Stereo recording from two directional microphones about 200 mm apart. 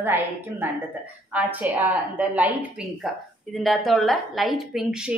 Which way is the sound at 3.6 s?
Centre (ahead or behind).